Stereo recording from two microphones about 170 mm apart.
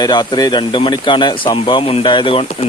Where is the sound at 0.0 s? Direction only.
25° left (ahead or behind).